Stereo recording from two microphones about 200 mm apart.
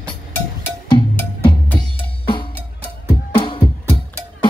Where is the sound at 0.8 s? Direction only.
20° left (ahead or behind).